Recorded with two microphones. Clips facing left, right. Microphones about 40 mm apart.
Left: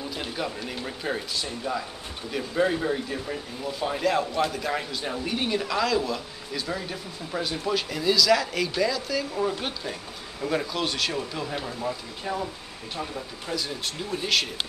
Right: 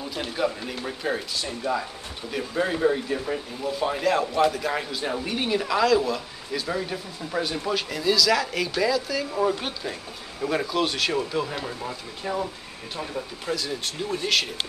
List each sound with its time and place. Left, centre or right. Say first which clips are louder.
0.1 s speech: right 8 dB; centre
1.6 s speech: right 5 dB; centre
2.3 s speech: left 1 dB; centre
13.5 s speech: right 2 dB; centre